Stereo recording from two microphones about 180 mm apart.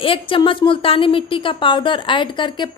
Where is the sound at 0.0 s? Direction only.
30° left (ahead or behind).